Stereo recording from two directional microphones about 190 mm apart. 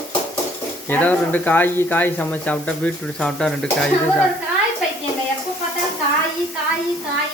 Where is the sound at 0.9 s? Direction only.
10° left (ahead or behind).